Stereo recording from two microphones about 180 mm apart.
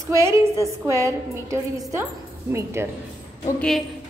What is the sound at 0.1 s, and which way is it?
A woman's voice, 15° right (ahead or behind).